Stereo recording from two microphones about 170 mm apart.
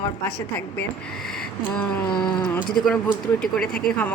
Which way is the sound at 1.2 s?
5° left (ahead or behind).